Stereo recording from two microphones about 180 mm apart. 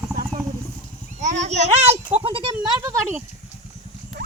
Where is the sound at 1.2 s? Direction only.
40° right (ahead or behind); by 2.9 s 25° right (ahead or behind).